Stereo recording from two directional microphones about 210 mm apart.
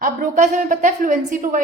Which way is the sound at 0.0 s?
40° right (ahead or behind).